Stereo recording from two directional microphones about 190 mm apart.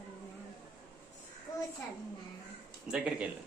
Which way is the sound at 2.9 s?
5° right (ahead or behind).